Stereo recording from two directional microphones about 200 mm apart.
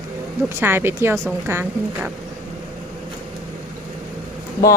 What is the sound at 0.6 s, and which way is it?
A woman's voice, 10° right (ahead or behind).